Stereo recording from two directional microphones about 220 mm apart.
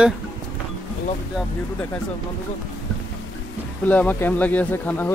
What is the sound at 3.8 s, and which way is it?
Speech, 5° left (ahead or behind).